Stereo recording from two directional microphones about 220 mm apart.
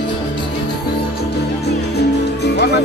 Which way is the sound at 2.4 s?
50° left (ahead or behind).